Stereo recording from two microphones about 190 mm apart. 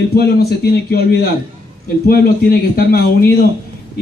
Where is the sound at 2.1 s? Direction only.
50° left (ahead or behind).